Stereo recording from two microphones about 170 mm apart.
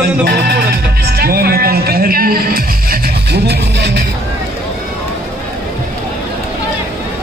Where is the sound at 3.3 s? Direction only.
80° right.